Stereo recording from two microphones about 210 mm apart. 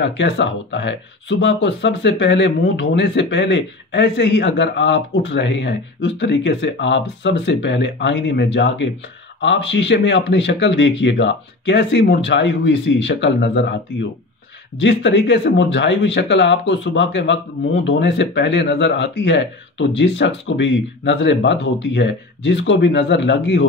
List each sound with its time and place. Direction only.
0.0 s speech: 55° left (ahead or behind)
14.8 s speech: 55° left (ahead or behind)